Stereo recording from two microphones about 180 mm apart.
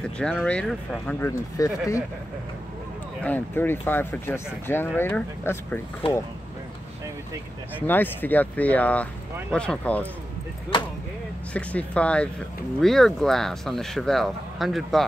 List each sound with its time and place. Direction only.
0.2 s speech: 5° left (ahead or behind)
1.2 s speech: 15° left (ahead or behind)
3.3 s speech: 10° left (ahead or behind)
7.8 s speech: 10° left (ahead or behind)
11.5 s speech: 5° left (ahead or behind)